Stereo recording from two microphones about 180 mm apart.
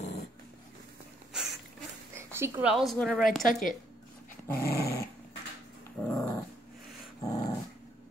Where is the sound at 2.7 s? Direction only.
Centre (ahead or behind).